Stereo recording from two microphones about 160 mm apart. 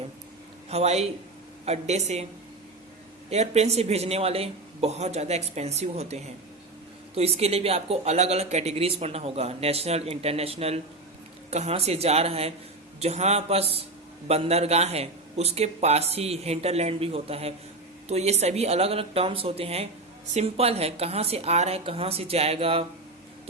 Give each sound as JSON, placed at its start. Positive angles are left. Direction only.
{"t": 0.7, "sound": "speech", "side_deg": -40}
{"t": 3.2, "sound": "speech", "side_deg": -45}